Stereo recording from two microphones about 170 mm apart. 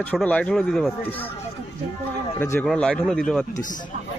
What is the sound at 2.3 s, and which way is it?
Speech, 15° left (ahead or behind).